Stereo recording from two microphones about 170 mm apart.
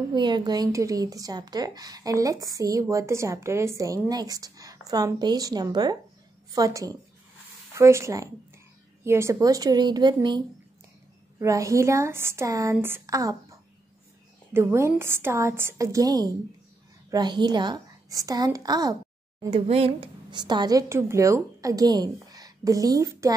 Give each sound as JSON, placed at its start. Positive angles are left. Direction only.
{"t": 0.1, "sound": "a woman's voice", "side_deg": -25}
{"t": 19.5, "sound": "speech", "side_deg": -35}